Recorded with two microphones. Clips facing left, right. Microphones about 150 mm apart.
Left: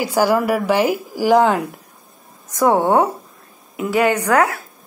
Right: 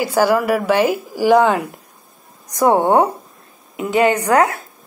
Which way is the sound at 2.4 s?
15° right (ahead or behind).